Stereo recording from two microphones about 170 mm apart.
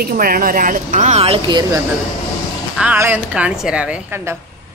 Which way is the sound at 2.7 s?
5° right (ahead or behind).